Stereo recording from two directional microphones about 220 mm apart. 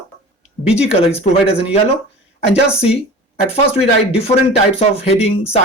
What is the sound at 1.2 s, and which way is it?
Speech, 30° left (ahead or behind).